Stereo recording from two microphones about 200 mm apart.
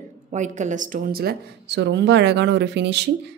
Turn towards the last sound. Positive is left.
turn(degrees=-60)  # may be behind; listen again after turning